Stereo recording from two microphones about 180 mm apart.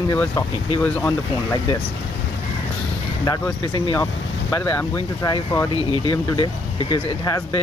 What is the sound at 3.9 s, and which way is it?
Speech, 15° left (ahead or behind).